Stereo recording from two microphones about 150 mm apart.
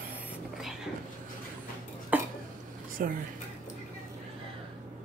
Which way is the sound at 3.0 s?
75° right (ahead or behind).